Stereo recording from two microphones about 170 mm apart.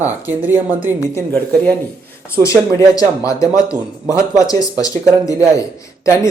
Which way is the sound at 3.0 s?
20° left (ahead or behind).